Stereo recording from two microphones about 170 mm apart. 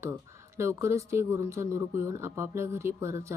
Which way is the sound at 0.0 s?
15° right (ahead or behind).